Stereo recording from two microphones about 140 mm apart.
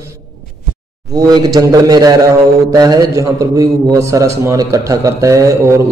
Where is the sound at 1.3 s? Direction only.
30° right (ahead or behind).